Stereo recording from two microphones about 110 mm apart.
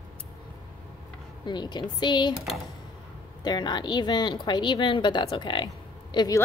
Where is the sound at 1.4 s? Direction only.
40° left (ahead or behind).